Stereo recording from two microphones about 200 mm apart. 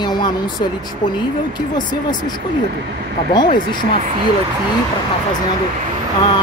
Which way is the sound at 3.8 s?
35° right (ahead or behind).